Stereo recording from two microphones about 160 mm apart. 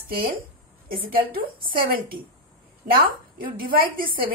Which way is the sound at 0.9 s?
65° right (ahead or behind).